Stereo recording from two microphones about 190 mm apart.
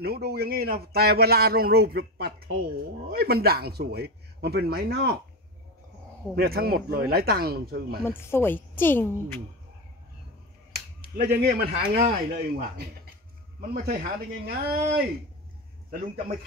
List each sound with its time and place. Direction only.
0.0 s a man's voice: 55° right (ahead or behind)
6.3 s speech: 55° right (ahead or behind)
8.0 s a woman's voice: 15° left (ahead or behind)
11.0 s a man's voice: 55° right (ahead or behind)